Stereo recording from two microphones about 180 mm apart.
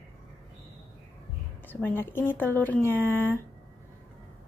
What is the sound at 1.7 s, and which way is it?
Speech, 10° left (ahead or behind).